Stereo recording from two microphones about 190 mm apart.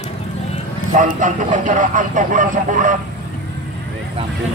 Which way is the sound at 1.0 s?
40° right (ahead or behind).